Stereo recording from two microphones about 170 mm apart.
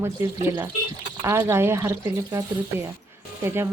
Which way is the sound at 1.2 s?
15° right (ahead or behind).